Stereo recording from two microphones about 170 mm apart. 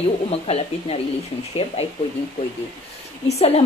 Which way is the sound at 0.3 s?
35° left (ahead or behind).